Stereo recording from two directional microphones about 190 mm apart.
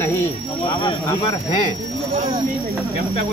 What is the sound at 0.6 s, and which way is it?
Speech, 25° left (ahead or behind).